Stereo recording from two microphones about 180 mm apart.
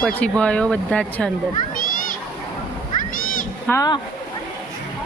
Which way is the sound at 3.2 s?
50° left (ahead or behind).